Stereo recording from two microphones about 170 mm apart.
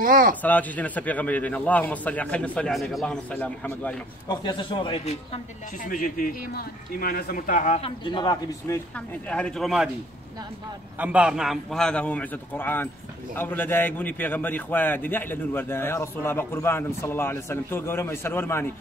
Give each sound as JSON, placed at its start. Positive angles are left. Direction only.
{"t": 0.0, "sound": "speech", "side_deg": -55}
{"t": 0.4, "sound": "a man's voice", "side_deg": 10}
{"t": 4.3, "sound": "a man's voice", "side_deg": 25}
{"t": 5.9, "sound": "a man's voice", "side_deg": 55}
{"t": 8.0, "sound": "a man's voice", "side_deg": 25}
{"t": 11.0, "sound": "a man's voice", "side_deg": -5}